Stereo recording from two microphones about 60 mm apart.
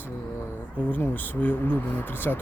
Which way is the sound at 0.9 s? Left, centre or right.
Left.